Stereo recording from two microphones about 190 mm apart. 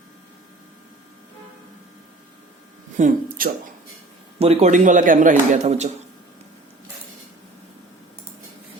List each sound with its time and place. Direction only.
3.0 s speech: 45° right (ahead or behind)
4.4 s a man's voice: 35° right (ahead or behind)